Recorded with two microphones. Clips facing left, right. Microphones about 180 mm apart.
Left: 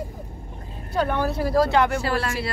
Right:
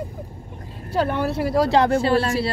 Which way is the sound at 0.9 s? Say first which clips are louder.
Right 2 dB; 30° right (ahead or behind).